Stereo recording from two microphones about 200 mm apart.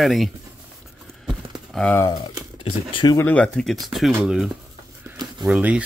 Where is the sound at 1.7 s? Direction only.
5° left (ahead or behind).